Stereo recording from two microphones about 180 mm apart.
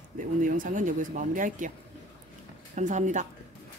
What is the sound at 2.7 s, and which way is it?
Speech, 45° right (ahead or behind).